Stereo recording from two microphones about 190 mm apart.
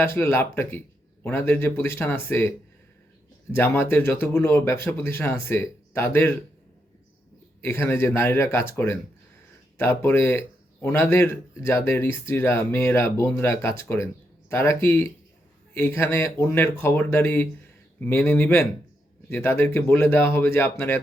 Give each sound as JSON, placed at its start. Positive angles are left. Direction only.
{"t": 0.0, "sound": "speech", "side_deg": 15}
{"t": 7.6, "sound": "speech", "side_deg": 10}